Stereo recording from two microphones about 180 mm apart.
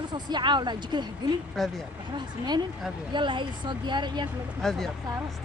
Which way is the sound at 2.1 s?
25° right (ahead or behind).